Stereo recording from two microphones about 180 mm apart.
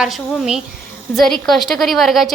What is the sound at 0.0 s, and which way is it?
A woman's voice, 5° right (ahead or behind).